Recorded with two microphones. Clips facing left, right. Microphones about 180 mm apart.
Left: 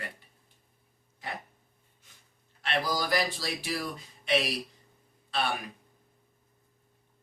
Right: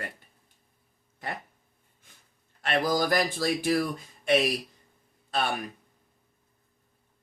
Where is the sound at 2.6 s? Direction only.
50° right (ahead or behind).